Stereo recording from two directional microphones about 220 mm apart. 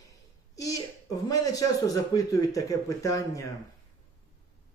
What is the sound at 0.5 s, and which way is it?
Speech, 15° left (ahead or behind).